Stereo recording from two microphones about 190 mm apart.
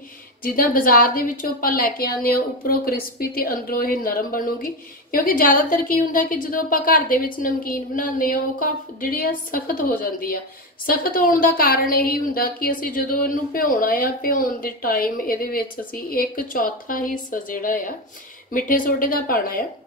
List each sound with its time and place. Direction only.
0.4 s a woman's voice: 50° left (ahead or behind)